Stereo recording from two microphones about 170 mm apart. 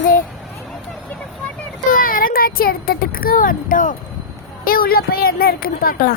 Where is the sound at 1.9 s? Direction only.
55° left (ahead or behind).